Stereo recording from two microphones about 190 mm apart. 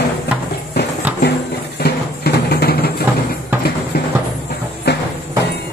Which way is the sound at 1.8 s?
55° left (ahead or behind).